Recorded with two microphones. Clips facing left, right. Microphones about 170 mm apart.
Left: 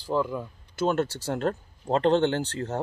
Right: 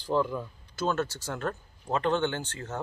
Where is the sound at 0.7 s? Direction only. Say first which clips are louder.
Left 4 dB; 25° left (ahead or behind).